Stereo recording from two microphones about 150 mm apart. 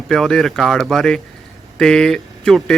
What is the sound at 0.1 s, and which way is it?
Speech, centre (ahead or behind).